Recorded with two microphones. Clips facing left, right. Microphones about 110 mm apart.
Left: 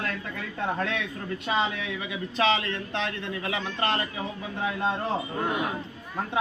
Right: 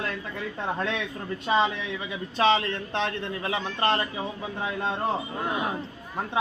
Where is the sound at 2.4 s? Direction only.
35° right (ahead or behind).